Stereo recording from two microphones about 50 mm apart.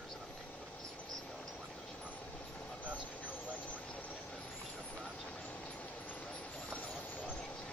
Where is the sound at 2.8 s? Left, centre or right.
Left.